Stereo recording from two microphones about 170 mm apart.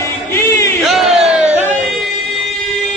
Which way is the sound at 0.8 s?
Centre (ahead or behind).